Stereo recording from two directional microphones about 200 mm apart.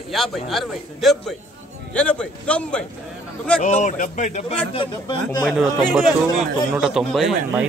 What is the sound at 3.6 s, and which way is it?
Speech, 35° left (ahead or behind).